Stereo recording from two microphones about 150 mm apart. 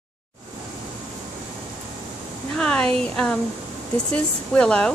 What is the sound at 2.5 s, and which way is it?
Speech, 5° left (ahead or behind).